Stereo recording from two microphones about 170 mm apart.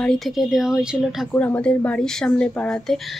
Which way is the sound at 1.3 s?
10° left (ahead or behind).